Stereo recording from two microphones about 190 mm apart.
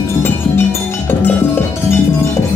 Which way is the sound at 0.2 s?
10° left (ahead or behind).